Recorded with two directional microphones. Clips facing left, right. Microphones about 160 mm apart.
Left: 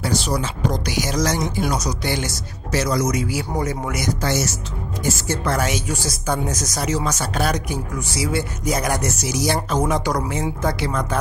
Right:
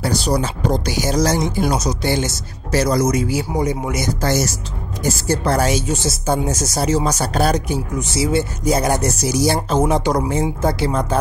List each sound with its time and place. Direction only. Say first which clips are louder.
0.0 s speech: right 3 dB; 35° right (ahead or behind)
3.4 s speech: right 4 dB; 15° right (ahead or behind)
4.2 s speech: right 3 dB; 40° right (ahead or behind)